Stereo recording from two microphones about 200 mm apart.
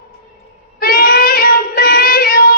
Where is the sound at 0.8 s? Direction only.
45° left (ahead or behind).